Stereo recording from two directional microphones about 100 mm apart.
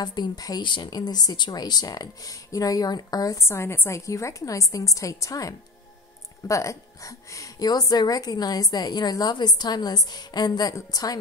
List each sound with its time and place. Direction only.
0.0 s a woman's voice: 45° left (ahead or behind)